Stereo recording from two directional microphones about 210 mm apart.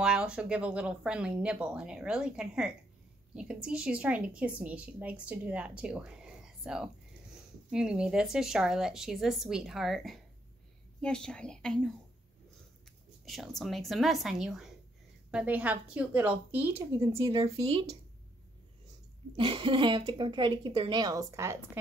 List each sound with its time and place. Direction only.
0.0 s a woman's voice: 5° right (ahead or behind)
13.2 s a woman's voice: centre (ahead or behind); by 17.9 s 30° right (ahead or behind)
19.3 s speech: 25° right (ahead or behind)